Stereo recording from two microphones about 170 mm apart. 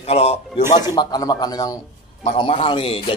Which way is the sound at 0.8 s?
25° left (ahead or behind).